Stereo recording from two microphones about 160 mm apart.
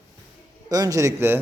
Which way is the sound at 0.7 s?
20° right (ahead or behind).